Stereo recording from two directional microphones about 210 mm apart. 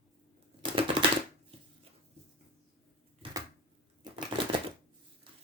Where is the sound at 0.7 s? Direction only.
25° right (ahead or behind).